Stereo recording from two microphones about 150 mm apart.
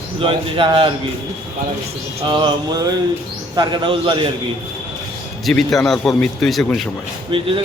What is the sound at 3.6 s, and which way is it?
Speech, 30° right (ahead or behind).